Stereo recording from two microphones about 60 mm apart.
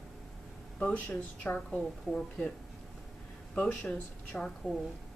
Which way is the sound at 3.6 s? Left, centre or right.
Centre.